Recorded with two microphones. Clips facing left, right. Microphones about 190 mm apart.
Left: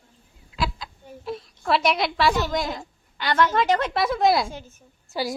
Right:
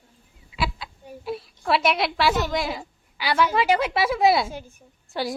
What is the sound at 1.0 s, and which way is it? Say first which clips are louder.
A woman's voice: right 1 dB; 5° right (ahead or behind).